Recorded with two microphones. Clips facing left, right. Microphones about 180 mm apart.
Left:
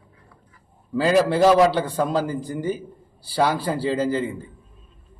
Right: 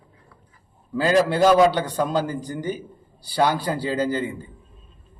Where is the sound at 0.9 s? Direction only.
5° left (ahead or behind).